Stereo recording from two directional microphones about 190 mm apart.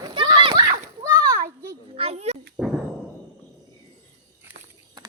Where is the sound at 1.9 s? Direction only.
30° right (ahead or behind).